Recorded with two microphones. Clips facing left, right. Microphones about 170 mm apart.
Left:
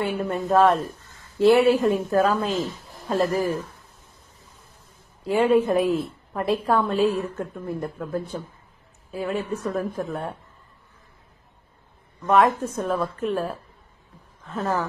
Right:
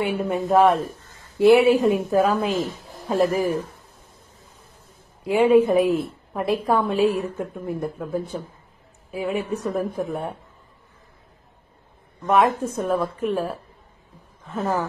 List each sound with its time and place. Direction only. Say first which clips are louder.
0.0 s a woman's voice: right 2 dB; 15° right (ahead or behind)
5.2 s a woman's voice: right 3 dB; 10° right (ahead or behind)
12.3 s a woman's voice: even; 10° right (ahead or behind)